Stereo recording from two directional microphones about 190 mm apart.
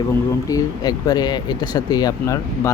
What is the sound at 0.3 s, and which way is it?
Speech, 20° left (ahead or behind).